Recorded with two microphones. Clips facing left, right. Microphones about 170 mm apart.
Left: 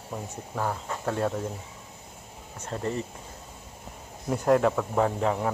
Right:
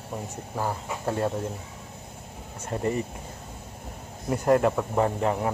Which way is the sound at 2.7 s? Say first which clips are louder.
Right 3 dB; 10° right (ahead or behind).